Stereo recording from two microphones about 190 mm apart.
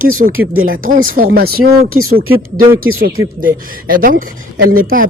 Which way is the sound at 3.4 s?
50° right (ahead or behind).